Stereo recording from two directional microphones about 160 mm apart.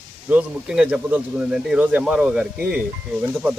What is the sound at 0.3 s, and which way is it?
Speech, 10° right (ahead or behind).